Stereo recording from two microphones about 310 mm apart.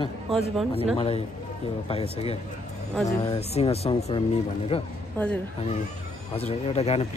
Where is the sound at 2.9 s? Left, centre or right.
Centre.